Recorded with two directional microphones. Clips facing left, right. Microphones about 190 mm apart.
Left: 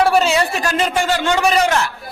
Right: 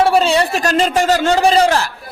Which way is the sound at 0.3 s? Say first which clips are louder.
Right 3 dB; 35° right (ahead or behind).